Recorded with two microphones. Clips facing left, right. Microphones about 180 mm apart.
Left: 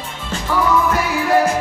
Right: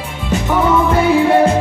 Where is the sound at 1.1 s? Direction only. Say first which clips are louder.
Right 4 dB; 25° right (ahead or behind).